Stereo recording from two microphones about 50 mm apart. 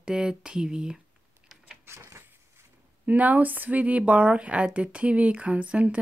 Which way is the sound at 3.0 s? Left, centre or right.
Right.